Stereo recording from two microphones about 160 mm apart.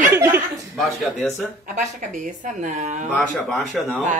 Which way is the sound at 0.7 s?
Centre (ahead or behind).